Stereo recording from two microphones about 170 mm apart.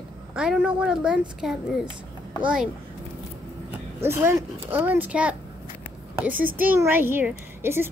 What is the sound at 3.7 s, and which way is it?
A child's voice, 15° right (ahead or behind).